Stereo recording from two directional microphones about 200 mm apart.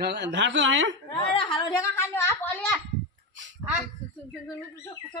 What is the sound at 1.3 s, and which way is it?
Speech, 25° left (ahead or behind).